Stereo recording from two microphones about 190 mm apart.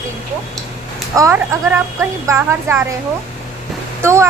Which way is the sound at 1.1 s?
15° right (ahead or behind).